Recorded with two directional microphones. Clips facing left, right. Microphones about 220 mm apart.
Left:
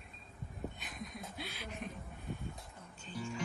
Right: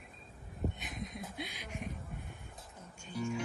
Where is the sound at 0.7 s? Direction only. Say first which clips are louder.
Right 3 dB; 20° right (ahead or behind).